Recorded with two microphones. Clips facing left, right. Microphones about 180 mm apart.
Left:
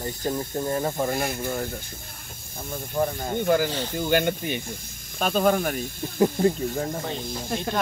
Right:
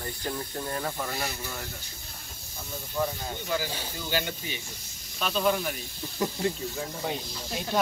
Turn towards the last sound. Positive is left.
turn(degrees=50)  # may be behind; listen again after turning